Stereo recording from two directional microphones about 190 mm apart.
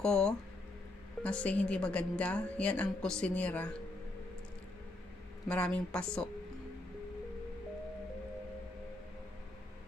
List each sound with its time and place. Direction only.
0.0 s a woman's voice: 5° left (ahead or behind)
5.5 s a woman's voice: 5° left (ahead or behind)